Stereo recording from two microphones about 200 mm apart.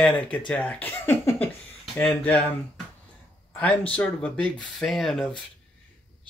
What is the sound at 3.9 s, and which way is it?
Speech, 5° left (ahead or behind).